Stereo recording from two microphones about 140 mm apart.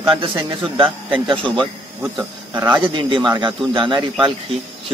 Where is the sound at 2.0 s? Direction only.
15° right (ahead or behind).